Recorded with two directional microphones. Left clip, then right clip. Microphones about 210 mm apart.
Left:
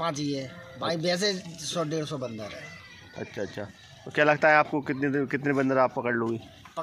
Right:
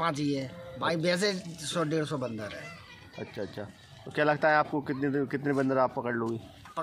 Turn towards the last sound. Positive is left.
turn(degrees=20)  # may be behind; listen again after turning